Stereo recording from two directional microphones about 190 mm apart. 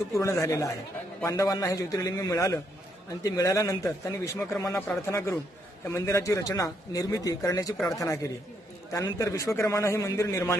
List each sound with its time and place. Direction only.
0.1 s a man's voice: 15° left (ahead or behind)